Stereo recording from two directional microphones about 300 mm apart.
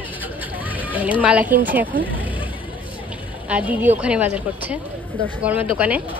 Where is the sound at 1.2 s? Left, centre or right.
Centre.